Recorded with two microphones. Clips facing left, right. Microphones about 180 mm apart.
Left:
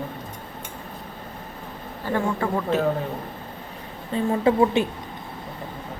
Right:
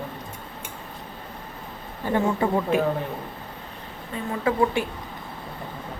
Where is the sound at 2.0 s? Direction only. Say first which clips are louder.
Right 2 dB; 20° right (ahead or behind).